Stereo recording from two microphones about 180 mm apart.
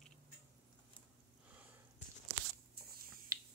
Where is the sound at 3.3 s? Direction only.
20° right (ahead or behind).